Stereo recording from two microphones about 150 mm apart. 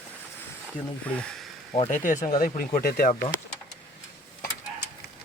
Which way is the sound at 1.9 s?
55° left (ahead or behind).